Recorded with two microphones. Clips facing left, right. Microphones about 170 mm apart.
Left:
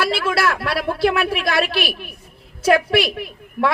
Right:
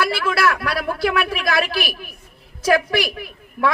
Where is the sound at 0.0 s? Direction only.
30° left (ahead or behind).